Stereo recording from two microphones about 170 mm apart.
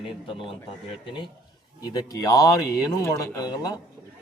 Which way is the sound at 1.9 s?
20° left (ahead or behind).